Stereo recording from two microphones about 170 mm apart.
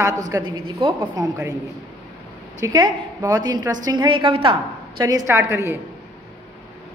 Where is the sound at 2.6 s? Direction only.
20° right (ahead or behind).